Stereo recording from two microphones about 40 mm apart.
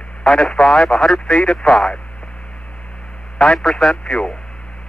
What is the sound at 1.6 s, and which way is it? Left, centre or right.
Speech, centre.